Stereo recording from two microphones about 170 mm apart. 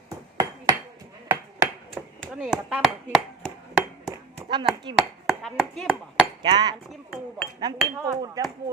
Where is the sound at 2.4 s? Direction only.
5° right (ahead or behind).